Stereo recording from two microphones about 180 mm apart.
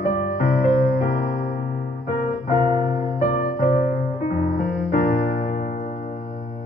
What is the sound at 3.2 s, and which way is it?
Music, 45° left (ahead or behind).